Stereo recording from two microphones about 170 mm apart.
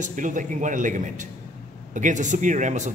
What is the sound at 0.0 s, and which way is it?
A man's voice, 50° right (ahead or behind).